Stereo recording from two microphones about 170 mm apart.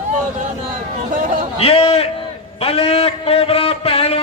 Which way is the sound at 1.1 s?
50° right (ahead or behind).